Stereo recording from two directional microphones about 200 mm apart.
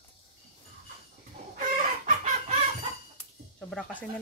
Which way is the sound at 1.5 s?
40° right (ahead or behind).